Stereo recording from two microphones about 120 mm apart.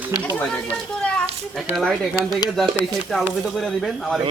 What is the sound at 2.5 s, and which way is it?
Speech, centre (ahead or behind).